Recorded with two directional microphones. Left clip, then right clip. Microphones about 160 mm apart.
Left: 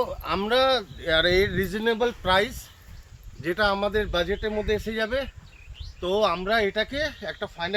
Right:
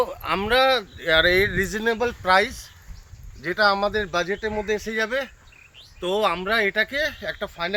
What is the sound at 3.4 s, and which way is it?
Speech, 20° left (ahead or behind).